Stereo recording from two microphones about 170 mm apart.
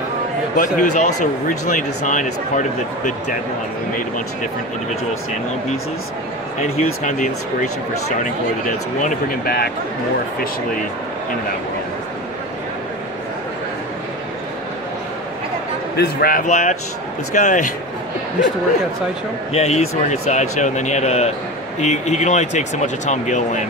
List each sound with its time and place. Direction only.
0.6 s speech: 45° left (ahead or behind)
6.6 s speech: 45° left (ahead or behind)
9.0 s speech: 60° left (ahead or behind)
16.0 s speech: 60° left (ahead or behind); by 17.6 s 45° left (ahead or behind)
19.5 s speech: 40° left (ahead or behind)